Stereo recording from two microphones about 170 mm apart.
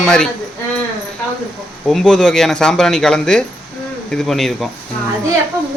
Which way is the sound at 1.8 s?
5° left (ahead or behind).